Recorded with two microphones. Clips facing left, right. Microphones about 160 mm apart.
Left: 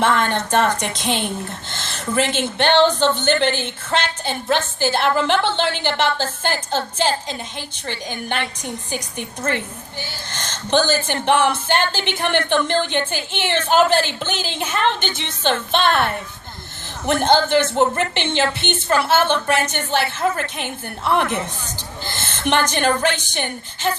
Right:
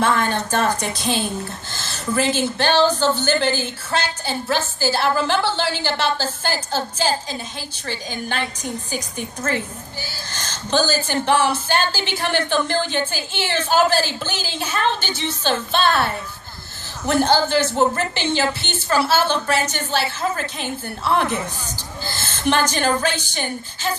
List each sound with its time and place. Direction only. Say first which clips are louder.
0.6 s speech: left 1 dB; 20° left (ahead or behind)
10.0 s a woman's voice: left 3 dB; 20° left (ahead or behind)